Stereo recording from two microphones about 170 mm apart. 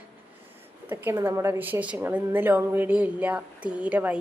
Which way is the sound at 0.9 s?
15° right (ahead or behind).